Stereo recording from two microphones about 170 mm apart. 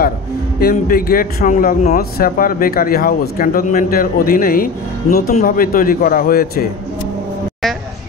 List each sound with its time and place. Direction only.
0.6 s a man's voice: 60° left (ahead or behind)